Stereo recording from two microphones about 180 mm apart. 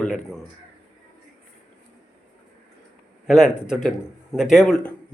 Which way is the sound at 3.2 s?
5° right (ahead or behind).